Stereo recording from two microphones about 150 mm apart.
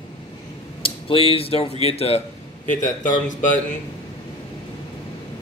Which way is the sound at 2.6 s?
60° left (ahead or behind).